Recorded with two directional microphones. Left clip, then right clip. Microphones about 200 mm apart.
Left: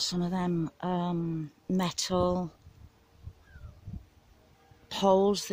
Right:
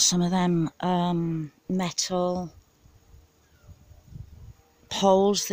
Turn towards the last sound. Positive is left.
turn(degrees=-15)  # may be behind; listen again after turning